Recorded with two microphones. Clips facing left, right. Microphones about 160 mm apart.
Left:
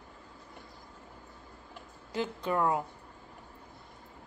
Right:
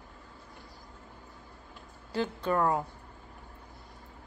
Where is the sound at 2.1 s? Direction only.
15° left (ahead or behind).